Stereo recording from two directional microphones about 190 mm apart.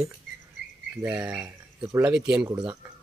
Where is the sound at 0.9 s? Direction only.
10° right (ahead or behind).